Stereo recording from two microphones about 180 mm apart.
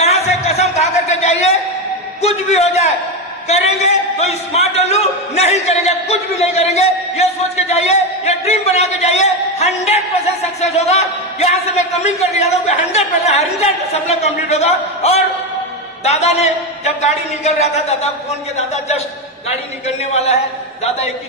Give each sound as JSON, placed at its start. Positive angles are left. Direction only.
{"t": 0.0, "sound": "a sound", "side_deg": 35}
{"t": 2.2, "sound": "a man's voice", "side_deg": 35}
{"t": 20.1, "sound": "a man's voice", "side_deg": 35}